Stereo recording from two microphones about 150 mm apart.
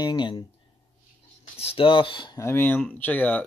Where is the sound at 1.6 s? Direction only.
40° left (ahead or behind).